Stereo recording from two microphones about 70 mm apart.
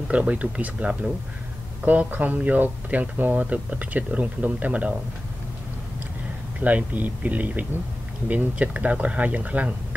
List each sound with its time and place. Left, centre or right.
0.1 s speech: centre
6.6 s speech: right